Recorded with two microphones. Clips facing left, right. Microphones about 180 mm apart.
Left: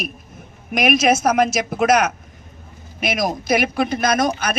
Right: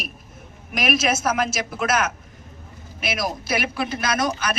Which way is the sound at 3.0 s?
45° left (ahead or behind).